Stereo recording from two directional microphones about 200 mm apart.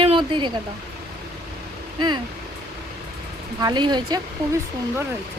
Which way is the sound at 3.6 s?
20° right (ahead or behind).